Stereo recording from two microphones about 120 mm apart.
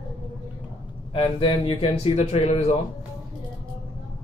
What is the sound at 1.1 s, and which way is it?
Speech, 45° left (ahead or behind).